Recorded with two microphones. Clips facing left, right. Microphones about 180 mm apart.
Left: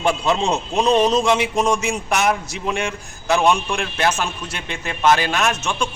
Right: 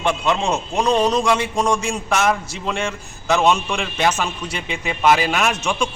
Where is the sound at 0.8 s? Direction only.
20° left (ahead or behind).